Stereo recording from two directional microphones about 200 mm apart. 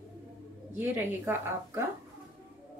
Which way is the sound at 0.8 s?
10° right (ahead or behind).